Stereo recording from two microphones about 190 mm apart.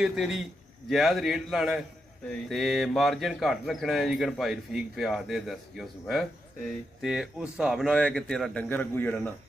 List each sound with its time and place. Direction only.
0.0 s speech: 5° right (ahead or behind)